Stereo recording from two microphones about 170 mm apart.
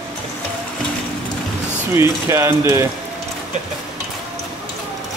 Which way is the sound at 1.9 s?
15° right (ahead or behind).